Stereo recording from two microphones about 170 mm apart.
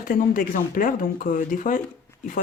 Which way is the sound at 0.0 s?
55° left (ahead or behind).